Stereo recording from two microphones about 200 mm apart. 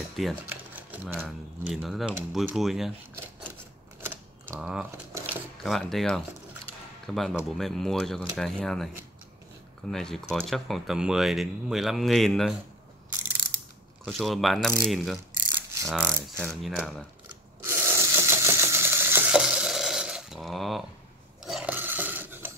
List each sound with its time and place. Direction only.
0.1 s speech: centre (ahead or behind)
4.5 s speech: 5° right (ahead or behind)
14.0 s speech: centre (ahead or behind)
17.6 s a sound: 15° right (ahead or behind)
21.5 s filing: 5° right (ahead or behind)